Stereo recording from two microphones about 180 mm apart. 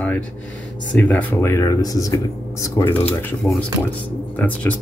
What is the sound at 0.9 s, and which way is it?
Speech, 10° left (ahead or behind).